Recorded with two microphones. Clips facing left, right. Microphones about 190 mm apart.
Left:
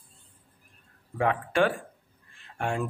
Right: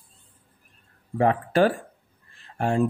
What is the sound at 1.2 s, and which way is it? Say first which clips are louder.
Speech: right 4 dB; 35° right (ahead or behind).